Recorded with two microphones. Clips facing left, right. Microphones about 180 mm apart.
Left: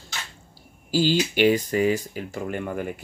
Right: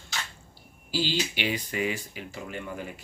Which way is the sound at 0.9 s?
45° left (ahead or behind).